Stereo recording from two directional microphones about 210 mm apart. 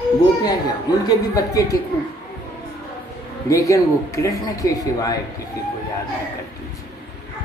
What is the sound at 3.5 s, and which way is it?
Speech, 15° left (ahead or behind).